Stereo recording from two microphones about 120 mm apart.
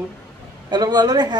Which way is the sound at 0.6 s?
35° right (ahead or behind).